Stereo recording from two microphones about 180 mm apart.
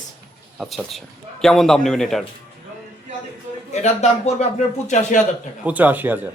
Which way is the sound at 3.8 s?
40° left (ahead or behind).